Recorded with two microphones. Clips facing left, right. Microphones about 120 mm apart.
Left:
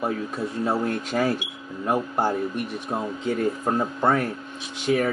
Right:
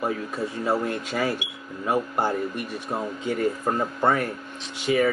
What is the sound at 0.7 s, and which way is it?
Speech, centre (ahead or behind).